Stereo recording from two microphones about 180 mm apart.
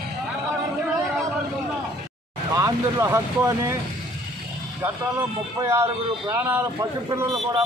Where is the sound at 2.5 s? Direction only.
15° right (ahead or behind).